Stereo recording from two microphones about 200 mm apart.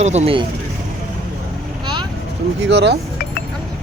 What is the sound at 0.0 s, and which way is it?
Speech, 35° right (ahead or behind).